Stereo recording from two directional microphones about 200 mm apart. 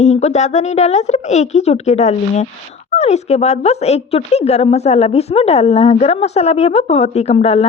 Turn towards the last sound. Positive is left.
turn(degrees=30)  # may be behind; listen again after turning